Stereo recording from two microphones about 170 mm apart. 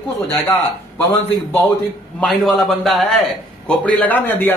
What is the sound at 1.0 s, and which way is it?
Speech, 10° left (ahead or behind).